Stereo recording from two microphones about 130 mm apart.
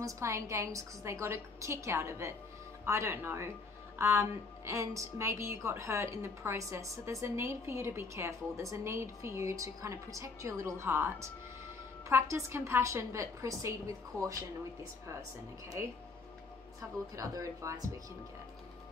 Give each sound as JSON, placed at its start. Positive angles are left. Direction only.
{"t": 0.0, "sound": "a woman's voice", "side_deg": -20}
{"t": 17.1, "sound": "a woman's voice", "side_deg": -25}